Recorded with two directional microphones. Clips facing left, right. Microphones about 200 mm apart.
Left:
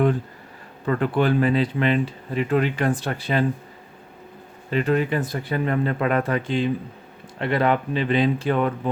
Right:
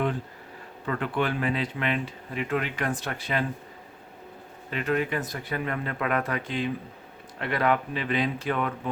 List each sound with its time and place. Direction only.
0.9 s speech: 40° left (ahead or behind)
4.7 s speech: 30° left (ahead or behind)